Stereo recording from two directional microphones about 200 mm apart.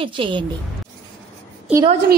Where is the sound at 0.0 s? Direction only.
25° right (ahead or behind).